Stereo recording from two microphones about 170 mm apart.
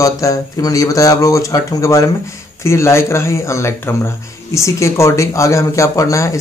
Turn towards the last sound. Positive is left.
turn(degrees=20)  # may be behind; listen again after turning